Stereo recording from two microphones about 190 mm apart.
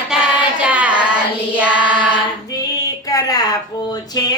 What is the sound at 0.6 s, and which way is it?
Child singing, 5° right (ahead or behind).